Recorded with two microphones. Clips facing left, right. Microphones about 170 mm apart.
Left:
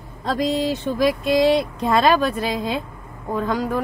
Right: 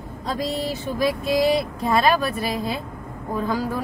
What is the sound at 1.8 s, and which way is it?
Speech, 90° left.